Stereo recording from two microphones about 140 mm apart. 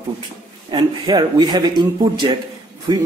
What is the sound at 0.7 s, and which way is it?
Speech, 30° right (ahead or behind).